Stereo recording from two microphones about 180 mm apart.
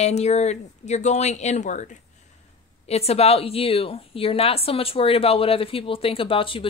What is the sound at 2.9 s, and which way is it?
A woman's voice, 35° left (ahead or behind).